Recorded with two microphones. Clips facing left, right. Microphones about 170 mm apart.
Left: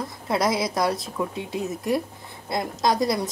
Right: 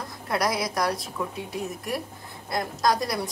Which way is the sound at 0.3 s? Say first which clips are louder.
Left 3 dB; 25° left (ahead or behind).